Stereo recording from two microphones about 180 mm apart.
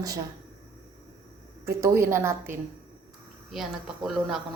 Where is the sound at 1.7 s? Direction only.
15° right (ahead or behind).